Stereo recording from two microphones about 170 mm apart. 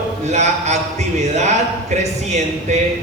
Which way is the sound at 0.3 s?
40° right (ahead or behind).